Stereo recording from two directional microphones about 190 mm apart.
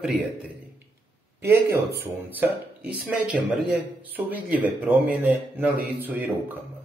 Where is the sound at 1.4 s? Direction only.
10° right (ahead or behind).